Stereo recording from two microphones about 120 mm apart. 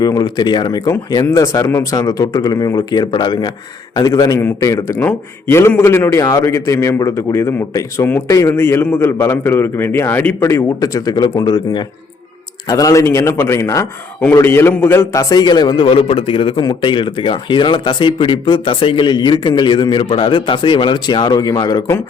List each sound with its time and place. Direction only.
0.0 s a man's voice: 35° left (ahead or behind)